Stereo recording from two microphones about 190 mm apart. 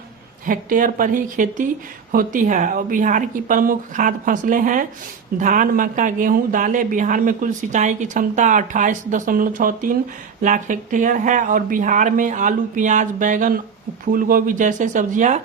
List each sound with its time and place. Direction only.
0.4 s speech: 45° right (ahead or behind)